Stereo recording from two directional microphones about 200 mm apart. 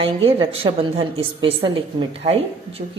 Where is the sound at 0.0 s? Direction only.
25° right (ahead or behind).